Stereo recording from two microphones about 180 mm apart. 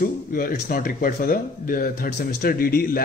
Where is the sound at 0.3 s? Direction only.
50° left (ahead or behind).